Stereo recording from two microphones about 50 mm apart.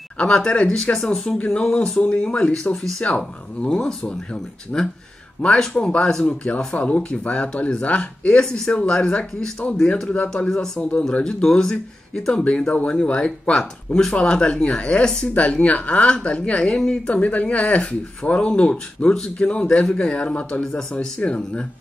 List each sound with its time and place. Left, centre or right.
0.2 s speech: centre
1.6 s speech: centre
2.7 s speech: centre
11.2 s speech: centre
12.4 s speech: left
13.5 s speech: centre
15.3 s speech: left